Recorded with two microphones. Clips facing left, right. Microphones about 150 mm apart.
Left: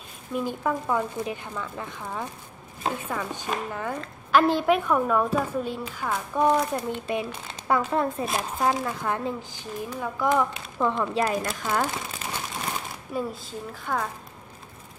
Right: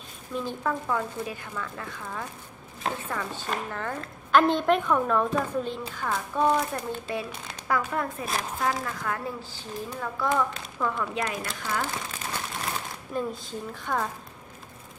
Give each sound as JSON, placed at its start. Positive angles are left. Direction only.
{"t": 0.3, "sound": "speech", "side_deg": 15}
{"t": 10.8, "sound": "speech", "side_deg": 25}
{"t": 13.1, "sound": "speech", "side_deg": 5}